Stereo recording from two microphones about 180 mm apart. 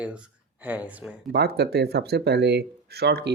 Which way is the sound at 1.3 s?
60° right (ahead or behind).